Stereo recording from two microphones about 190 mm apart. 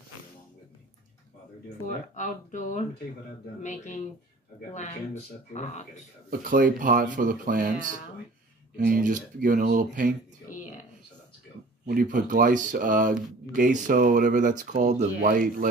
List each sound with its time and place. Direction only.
1.9 s speech: 40° left (ahead or behind)
5.5 s speech: 40° left (ahead or behind)
6.4 s speech: 45° right (ahead or behind)
8.7 s speech: 45° right (ahead or behind)
10.5 s a sound: 45° left (ahead or behind)
11.8 s speech: 50° right (ahead or behind)